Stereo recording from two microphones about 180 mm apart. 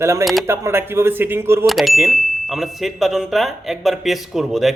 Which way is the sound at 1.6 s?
Centre (ahead or behind).